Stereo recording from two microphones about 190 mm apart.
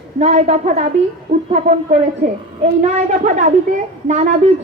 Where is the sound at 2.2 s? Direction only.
45° right (ahead or behind).